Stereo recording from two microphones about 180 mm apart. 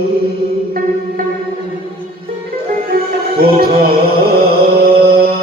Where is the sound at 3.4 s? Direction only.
60° right (ahead or behind).